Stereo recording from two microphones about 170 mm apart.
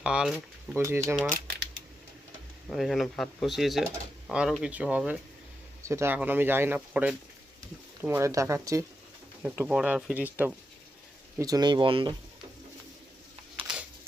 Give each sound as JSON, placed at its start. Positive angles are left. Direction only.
{"t": 0.0, "sound": "speech", "side_deg": -5}
{"t": 0.7, "sound": "speech", "side_deg": -15}
{"t": 2.6, "sound": "speech", "side_deg": 0}
{"t": 11.3, "sound": "speech", "side_deg": -20}